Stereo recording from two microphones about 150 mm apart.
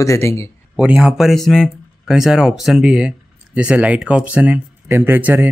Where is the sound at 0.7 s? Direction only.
5° right (ahead or behind).